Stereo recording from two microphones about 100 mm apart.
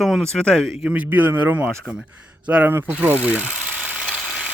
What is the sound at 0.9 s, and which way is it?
Speech, 20° right (ahead or behind).